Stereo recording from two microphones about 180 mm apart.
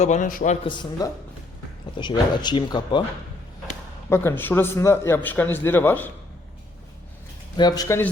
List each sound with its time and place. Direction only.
0.0 s a man's voice: 45° left (ahead or behind); by 3.0 s 25° left (ahead or behind)
4.1 s speech: 15° left (ahead or behind)
7.5 s speech: 20° left (ahead or behind)